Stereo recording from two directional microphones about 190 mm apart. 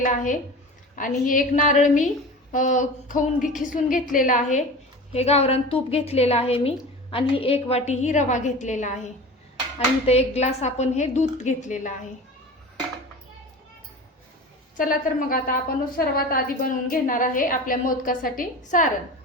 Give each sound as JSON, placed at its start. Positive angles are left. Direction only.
{"t": 0.0, "sound": "a woman's voice", "side_deg": 40}
{"t": 14.8, "sound": "a woman's voice", "side_deg": 45}